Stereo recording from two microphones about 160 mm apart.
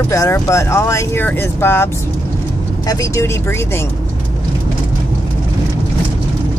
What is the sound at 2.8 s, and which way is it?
Speech, 20° left (ahead or behind).